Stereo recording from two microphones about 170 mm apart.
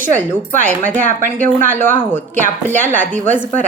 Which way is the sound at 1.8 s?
10° left (ahead or behind).